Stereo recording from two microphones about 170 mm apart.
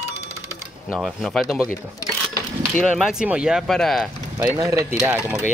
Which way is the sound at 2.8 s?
5° right (ahead or behind).